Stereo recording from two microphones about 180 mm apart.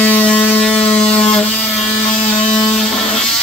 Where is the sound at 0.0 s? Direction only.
10° left (ahead or behind).